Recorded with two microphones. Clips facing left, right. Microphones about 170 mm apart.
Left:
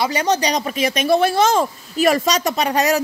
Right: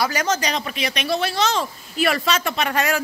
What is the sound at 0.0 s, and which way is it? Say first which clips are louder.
Speech: left 3 dB; 30° left (ahead or behind).